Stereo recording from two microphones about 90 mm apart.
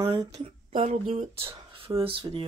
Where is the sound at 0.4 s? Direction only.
90° right.